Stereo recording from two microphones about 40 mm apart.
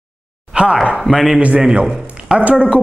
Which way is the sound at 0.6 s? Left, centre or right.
Right.